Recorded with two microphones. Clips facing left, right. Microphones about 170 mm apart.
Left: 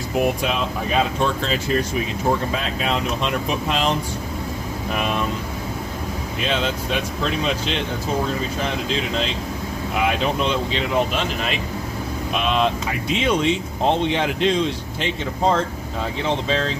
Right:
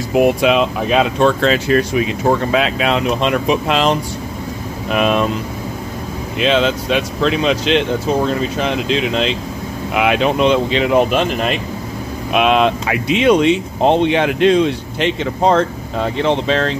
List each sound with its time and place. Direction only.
0.1 s speech: 90° right
4.9 s speech: 90° right
6.4 s speech: 90° right; by 11.5 s 60° right (ahead or behind)
12.3 s speech: 70° right (ahead or behind)